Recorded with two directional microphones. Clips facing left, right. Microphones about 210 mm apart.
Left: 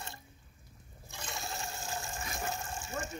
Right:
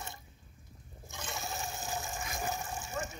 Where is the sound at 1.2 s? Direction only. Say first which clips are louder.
Right 1 dB; centre (ahead or behind).